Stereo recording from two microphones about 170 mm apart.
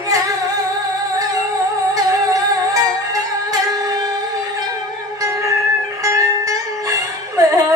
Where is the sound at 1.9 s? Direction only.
20° right (ahead or behind).